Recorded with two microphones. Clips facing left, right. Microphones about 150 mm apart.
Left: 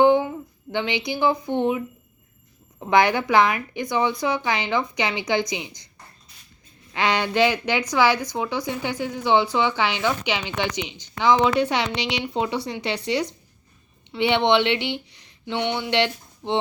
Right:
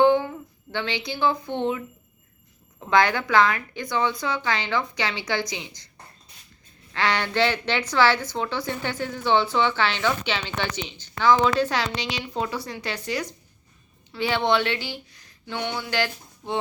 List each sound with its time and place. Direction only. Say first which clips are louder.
0.0 s a sound: left 2 dB; 15° left (ahead or behind)
2.7 s speech: left 2 dB; 20° left (ahead or behind)
6.9 s a woman's voice: left 2 dB; 15° left (ahead or behind)